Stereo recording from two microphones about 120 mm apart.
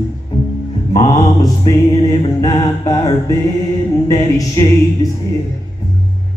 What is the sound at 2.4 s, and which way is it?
Music, 35° left (ahead or behind).